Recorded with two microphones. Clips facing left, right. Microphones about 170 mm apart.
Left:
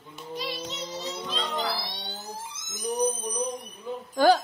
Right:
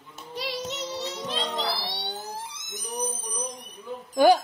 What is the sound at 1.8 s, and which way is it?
Fire alarm, 75° right (ahead or behind).